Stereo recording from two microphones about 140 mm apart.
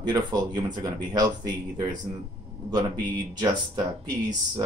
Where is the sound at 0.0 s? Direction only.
30° right (ahead or behind).